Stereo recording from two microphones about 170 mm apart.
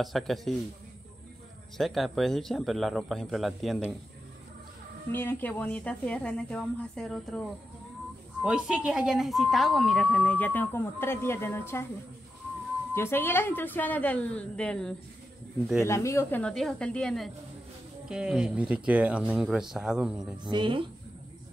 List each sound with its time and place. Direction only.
0.0 s speech: centre (ahead or behind)
1.8 s speech: centre (ahead or behind)
5.1 s a woman's voice: 10° left (ahead or behind)
12.9 s a woman's voice: 15° left (ahead or behind)
15.8 s a woman's voice: 15° left (ahead or behind); by 20.3 s 5° right (ahead or behind)
20.4 s speech: 30° right (ahead or behind)